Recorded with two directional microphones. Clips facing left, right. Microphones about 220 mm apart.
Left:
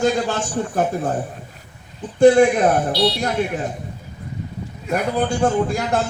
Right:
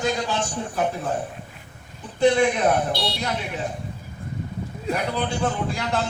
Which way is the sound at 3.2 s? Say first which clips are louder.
Left 7 dB; 50° left (ahead or behind).